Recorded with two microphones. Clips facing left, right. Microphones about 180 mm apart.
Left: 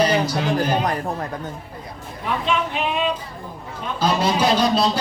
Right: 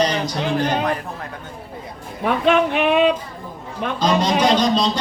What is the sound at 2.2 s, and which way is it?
Speech, 65° right (ahead or behind).